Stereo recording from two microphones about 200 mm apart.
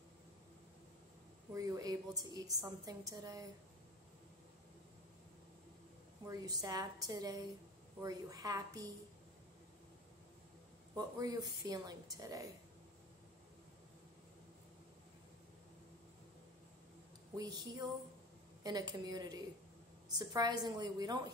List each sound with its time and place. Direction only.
1.5 s a woman's voice: 15° right (ahead or behind)
6.2 s a woman's voice: 20° right (ahead or behind)
11.0 s a woman's voice: 20° right (ahead or behind)
17.4 s a woman's voice: 20° right (ahead or behind)